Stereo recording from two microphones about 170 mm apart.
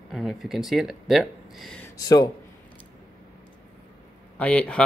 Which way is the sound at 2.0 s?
20° left (ahead or behind).